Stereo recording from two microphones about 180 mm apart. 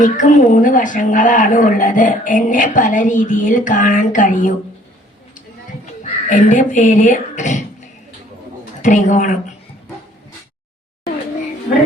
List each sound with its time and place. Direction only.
0.0 s a woman's voice: 45° left (ahead or behind)
5.8 s speech: 45° left (ahead or behind)
8.8 s a woman's voice: 40° left (ahead or behind)